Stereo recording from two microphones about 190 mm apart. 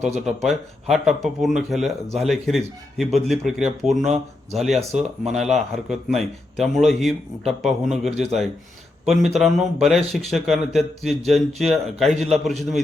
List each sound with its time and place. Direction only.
0.3 s a man's voice: centre (ahead or behind)
4.8 s speech: 35° right (ahead or behind)
5.3 s a man's voice: centre (ahead or behind)